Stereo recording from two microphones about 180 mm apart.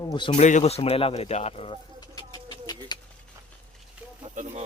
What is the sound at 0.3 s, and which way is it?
Speech, 40° left (ahead or behind).